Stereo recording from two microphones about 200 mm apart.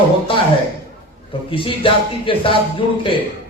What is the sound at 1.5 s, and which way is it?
A man's voice, 25° left (ahead or behind).